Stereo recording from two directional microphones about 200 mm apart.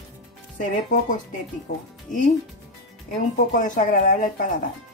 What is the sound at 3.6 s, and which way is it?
Speech, 40° left (ahead or behind).